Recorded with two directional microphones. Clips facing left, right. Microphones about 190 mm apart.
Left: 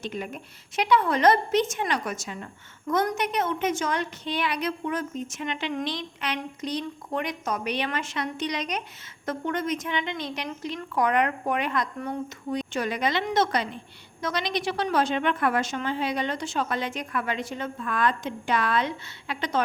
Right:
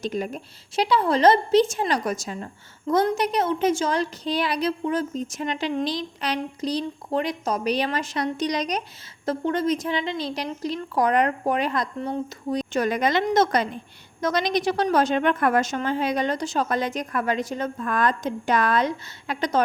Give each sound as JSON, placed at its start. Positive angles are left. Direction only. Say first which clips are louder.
{"t": 0.0, "sound": "a woman's voice", "louder": "right 5 dB", "side_deg": -40}